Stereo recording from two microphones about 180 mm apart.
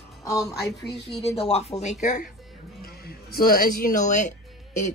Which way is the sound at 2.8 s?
60° left (ahead or behind).